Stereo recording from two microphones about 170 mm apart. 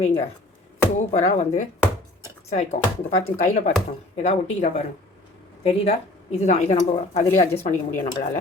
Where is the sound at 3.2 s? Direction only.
40° left (ahead or behind).